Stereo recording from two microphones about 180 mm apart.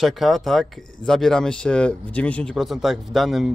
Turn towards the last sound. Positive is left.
turn(degrees=0)  # may be behind; listen again after turning